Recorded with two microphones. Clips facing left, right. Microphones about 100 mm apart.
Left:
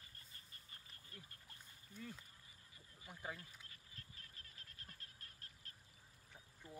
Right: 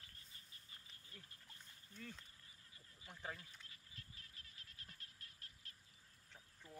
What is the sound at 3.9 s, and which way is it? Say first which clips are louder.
Frog: left 1 dB; 40° left (ahead or behind).